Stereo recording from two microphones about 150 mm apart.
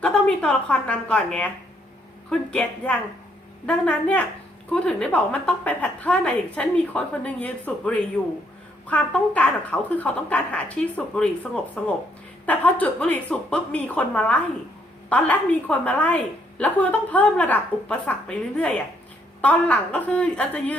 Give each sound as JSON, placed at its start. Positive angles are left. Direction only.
{"t": 0.0, "sound": "a woman's voice", "side_deg": 5}